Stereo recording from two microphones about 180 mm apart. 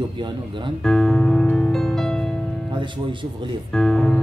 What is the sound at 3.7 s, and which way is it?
Speech, 5° left (ahead or behind).